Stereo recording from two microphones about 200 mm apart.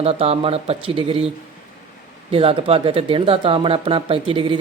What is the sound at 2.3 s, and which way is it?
Speech, 30° right (ahead or behind).